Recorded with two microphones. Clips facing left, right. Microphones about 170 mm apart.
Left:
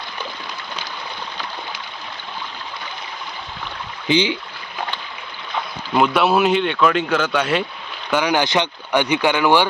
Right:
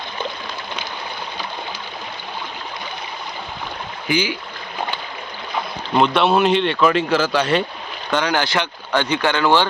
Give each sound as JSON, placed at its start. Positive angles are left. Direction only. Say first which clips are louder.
{"t": 4.1, "sound": "speech", "louder": "left 3 dB", "side_deg": 20}
{"t": 5.9, "sound": "speech", "louder": "even", "side_deg": 5}
{"t": 8.1, "sound": "speech", "louder": "left 2 dB", "side_deg": 15}